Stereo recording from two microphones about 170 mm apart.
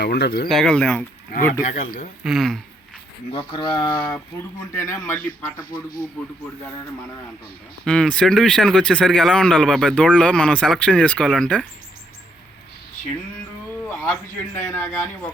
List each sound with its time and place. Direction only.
0.0 s speech: 75° left (ahead or behind)
0.4 s speech: centre (ahead or behind)
1.6 s speech: 50° left (ahead or behind)
2.2 s speech: centre (ahead or behind)
3.3 s speech: 30° left (ahead or behind)
3.8 s speech: 10° left (ahead or behind)
7.9 s speech: 5° left (ahead or behind)
13.9 s speech: 10° left (ahead or behind)